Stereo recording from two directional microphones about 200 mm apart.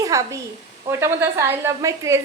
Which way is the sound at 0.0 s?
15° right (ahead or behind).